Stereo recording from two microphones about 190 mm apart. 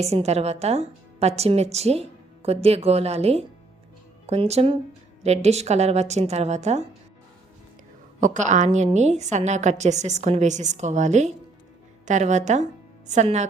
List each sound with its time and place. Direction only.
0.0 s a woman's voice: 35° right (ahead or behind)
8.2 s a woman's voice: 40° right (ahead or behind)